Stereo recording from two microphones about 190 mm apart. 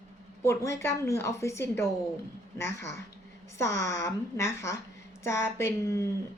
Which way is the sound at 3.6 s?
15° left (ahead or behind).